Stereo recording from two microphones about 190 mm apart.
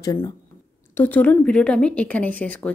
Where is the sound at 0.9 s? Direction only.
10° left (ahead or behind).